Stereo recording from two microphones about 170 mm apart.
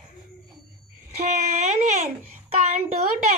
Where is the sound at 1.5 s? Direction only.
40° right (ahead or behind).